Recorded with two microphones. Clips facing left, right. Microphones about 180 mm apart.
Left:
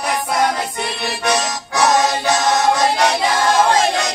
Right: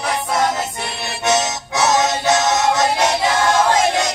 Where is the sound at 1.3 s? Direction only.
25° right (ahead or behind).